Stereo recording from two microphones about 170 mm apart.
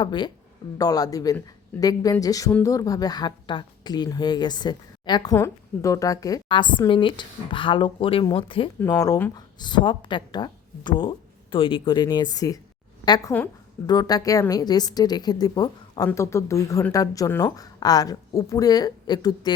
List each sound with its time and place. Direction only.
0.0 s a woman's voice: 25° left (ahead or behind)
8.8 s a woman's voice: 15° left (ahead or behind)